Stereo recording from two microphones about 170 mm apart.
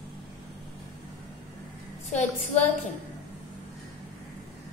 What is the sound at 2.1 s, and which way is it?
Speech, 45° left (ahead or behind).